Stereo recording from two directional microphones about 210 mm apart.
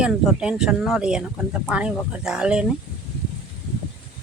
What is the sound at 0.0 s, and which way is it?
Speech, 5° right (ahead or behind).